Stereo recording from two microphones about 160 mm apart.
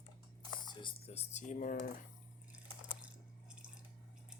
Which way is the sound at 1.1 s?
45° left (ahead or behind).